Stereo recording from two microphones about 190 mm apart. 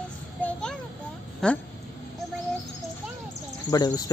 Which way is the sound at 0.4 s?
5° left (ahead or behind).